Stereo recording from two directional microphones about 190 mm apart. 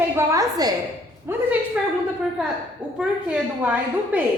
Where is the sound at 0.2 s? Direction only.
15° right (ahead or behind).